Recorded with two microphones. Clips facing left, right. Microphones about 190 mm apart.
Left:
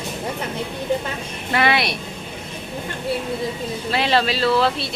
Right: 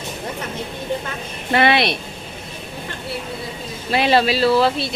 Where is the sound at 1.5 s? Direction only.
25° right (ahead or behind).